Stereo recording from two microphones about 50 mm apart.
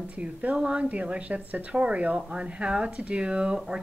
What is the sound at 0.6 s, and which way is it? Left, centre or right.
Speech, centre.